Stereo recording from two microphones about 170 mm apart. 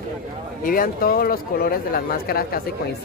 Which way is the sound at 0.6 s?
55° left (ahead or behind).